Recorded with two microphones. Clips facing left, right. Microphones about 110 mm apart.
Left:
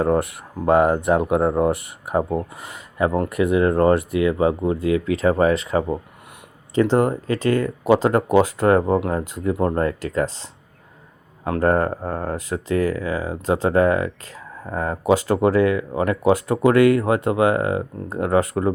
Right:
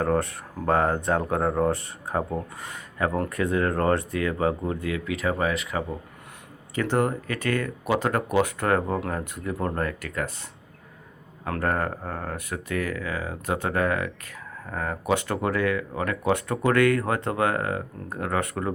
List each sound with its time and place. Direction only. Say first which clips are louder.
0.6 s speech: left 6 dB; 20° left (ahead or behind); by 6.0 s 35° left (ahead or behind)
6.7 s speech: left 7 dB; 20° left (ahead or behind)